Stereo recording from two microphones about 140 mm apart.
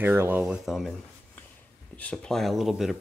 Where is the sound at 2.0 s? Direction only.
5° left (ahead or behind).